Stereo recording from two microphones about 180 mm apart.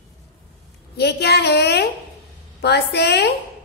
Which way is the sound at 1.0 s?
65° left (ahead or behind).